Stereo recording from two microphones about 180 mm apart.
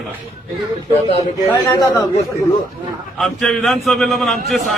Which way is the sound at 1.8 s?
25° left (ahead or behind).